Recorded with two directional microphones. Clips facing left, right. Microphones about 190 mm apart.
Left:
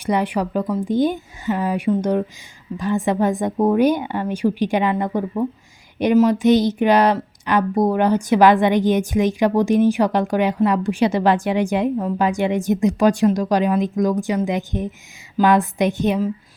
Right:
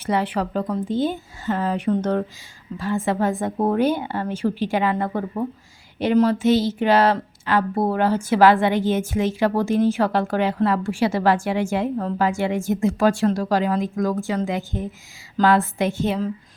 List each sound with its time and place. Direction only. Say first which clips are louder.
0.0 s speech: left 2 dB; 15° left (ahead or behind)